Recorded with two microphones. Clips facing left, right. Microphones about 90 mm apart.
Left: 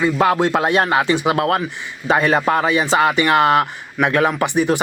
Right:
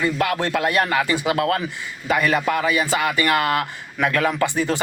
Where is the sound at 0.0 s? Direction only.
25° left (ahead or behind).